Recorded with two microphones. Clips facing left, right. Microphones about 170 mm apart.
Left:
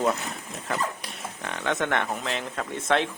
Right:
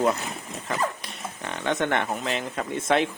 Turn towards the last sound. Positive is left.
turn(degrees=-5)  # may be behind; listen again after turning